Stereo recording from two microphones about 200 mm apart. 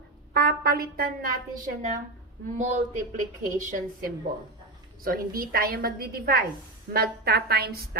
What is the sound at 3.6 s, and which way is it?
A woman's voice, 40° right (ahead or behind).